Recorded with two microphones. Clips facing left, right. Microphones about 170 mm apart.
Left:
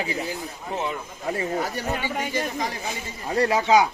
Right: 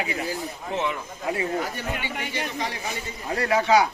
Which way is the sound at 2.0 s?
45° left (ahead or behind).